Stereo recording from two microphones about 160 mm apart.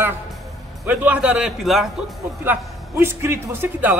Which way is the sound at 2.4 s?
15° right (ahead or behind).